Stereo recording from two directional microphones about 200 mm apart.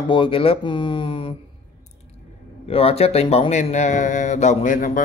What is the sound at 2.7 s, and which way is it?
Speech, 30° left (ahead or behind).